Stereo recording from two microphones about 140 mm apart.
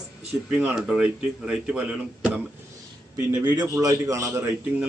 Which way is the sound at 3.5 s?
25° right (ahead or behind).